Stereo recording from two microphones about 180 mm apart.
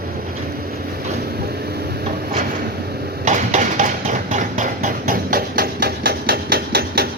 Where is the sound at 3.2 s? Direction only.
45° right (ahead or behind).